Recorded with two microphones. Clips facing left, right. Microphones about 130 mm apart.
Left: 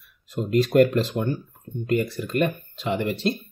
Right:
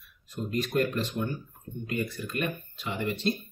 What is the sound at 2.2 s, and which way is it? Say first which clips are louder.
Speech: left 8 dB; 65° left (ahead or behind).